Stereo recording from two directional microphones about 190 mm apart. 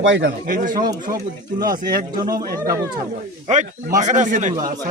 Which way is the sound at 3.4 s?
40° right (ahead or behind).